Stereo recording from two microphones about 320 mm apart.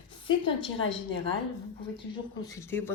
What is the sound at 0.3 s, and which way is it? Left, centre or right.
Speech, centre.